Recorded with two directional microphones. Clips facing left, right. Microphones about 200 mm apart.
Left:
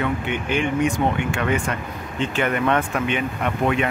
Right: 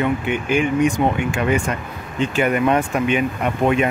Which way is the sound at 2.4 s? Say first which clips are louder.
Right 3 dB; 10° right (ahead or behind).